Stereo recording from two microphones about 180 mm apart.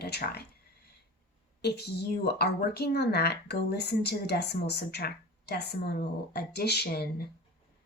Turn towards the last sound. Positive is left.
turn(degrees=60)  # may be behind; listen again after turning